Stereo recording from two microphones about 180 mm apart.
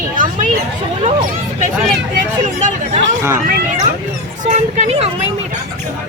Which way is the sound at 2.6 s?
40° right (ahead or behind).